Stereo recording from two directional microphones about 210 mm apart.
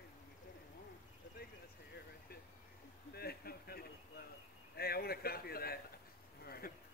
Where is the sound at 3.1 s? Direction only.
45° left (ahead or behind).